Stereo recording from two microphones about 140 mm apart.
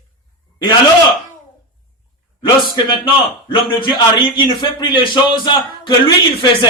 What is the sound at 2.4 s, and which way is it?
A man's voice, 35° left (ahead or behind).